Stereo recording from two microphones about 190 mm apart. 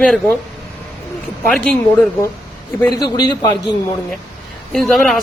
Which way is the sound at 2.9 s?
20° left (ahead or behind).